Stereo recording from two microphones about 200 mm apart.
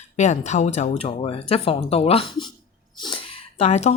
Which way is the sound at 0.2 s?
35° left (ahead or behind).